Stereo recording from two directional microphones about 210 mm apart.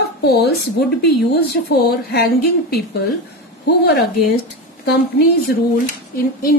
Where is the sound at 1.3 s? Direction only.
50° left (ahead or behind).